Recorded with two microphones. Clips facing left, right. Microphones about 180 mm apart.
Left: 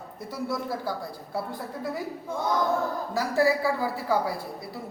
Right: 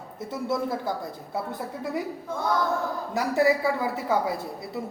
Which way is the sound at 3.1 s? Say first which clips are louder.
Right 2 dB; 20° right (ahead or behind).